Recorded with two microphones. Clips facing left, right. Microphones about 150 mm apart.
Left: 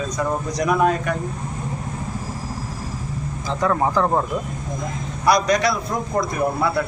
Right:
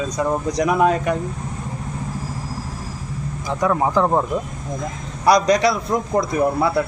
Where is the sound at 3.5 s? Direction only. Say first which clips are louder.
Right 1 dB; 10° right (ahead or behind).